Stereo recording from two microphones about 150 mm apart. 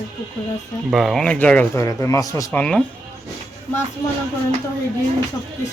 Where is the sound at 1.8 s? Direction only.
20° left (ahead or behind).